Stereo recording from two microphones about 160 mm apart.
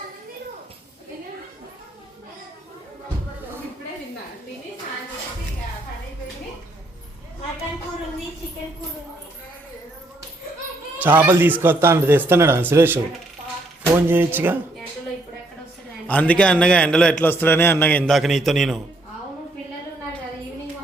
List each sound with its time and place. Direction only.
11.0 s a man's voice: 10° right (ahead or behind)
16.0 s a man's voice: 10° left (ahead or behind)
18.1 s a man's voice: centre (ahead or behind)